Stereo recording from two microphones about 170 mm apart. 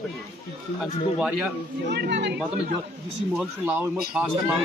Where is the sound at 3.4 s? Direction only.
10° right (ahead or behind).